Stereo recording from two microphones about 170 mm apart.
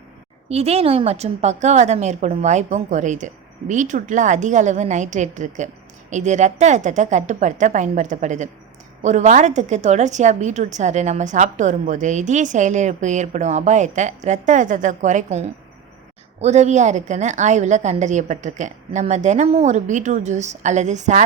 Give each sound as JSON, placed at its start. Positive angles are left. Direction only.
{"t": 0.4, "sound": "a woman's voice", "side_deg": -35}